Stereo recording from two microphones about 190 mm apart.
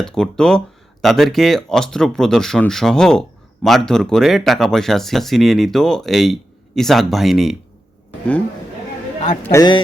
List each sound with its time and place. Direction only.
0.0 s speech: 5° left (ahead or behind)
9.4 s a man's voice: 15° left (ahead or behind)